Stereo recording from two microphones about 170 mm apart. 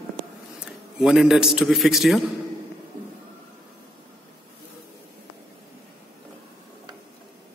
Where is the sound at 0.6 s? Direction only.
5° right (ahead or behind).